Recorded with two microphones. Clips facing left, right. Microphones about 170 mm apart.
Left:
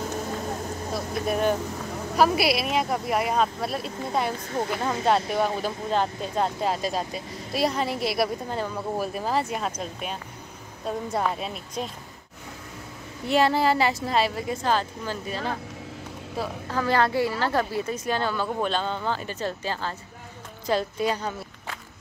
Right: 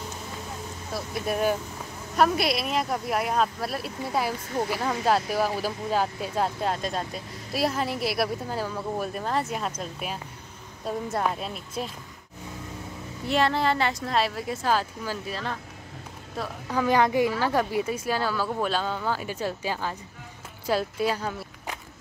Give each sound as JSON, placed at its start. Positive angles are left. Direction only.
{"t": 0.9, "sound": "speech", "side_deg": 0}
{"t": 13.3, "sound": "speech", "side_deg": 5}
{"t": 16.7, "sound": "speech", "side_deg": -15}